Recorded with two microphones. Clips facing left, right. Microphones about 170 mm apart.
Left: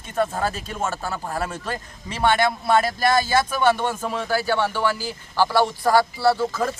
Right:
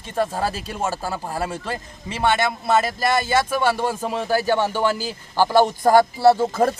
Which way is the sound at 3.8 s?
30° right (ahead or behind).